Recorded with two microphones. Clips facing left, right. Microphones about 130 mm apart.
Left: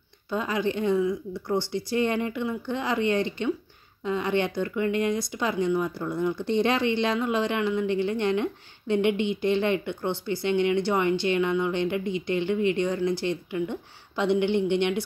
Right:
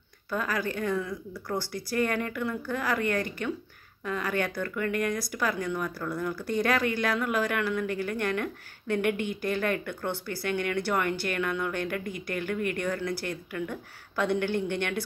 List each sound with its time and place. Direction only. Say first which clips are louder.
0.3 s speech: left 4 dB; 20° left (ahead or behind)